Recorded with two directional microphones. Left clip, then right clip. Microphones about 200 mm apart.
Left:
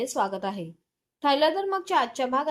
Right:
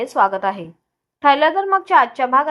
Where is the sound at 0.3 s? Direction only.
25° left (ahead or behind).